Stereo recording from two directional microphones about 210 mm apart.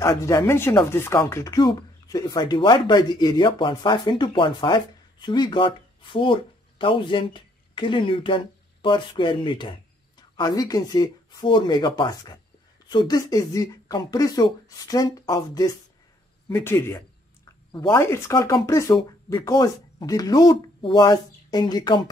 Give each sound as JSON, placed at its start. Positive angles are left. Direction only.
{"t": 0.0, "sound": "speech", "side_deg": 15}